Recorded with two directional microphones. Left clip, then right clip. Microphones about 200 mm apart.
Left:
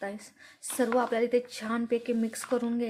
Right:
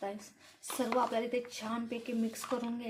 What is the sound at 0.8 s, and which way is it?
A woman's voice, 55° left (ahead or behind).